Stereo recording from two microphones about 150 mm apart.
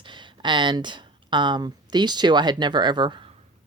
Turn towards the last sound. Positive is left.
turn(degrees=-30)  # may be behind; listen again after turning